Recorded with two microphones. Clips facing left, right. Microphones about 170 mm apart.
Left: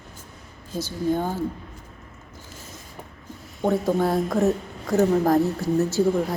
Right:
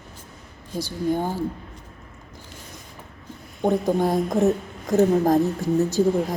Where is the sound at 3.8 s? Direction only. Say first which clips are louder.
Right 1 dB; 15° right (ahead or behind).